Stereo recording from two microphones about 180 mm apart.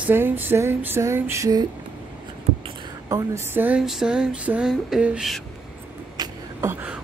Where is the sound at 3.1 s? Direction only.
15° right (ahead or behind).